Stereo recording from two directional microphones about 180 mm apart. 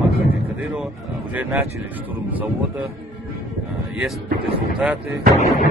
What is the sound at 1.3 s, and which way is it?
Speech, 10° right (ahead or behind).